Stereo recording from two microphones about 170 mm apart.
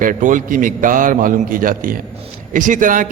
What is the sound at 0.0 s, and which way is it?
A man's voice, 50° right (ahead or behind).